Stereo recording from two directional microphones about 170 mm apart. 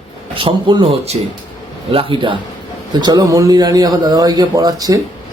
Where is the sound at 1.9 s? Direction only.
35° right (ahead or behind).